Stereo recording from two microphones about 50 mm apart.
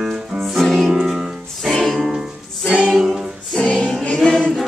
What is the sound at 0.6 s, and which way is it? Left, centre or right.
Music, centre.